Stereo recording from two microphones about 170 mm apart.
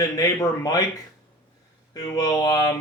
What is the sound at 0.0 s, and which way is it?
Speech, 20° left (ahead or behind).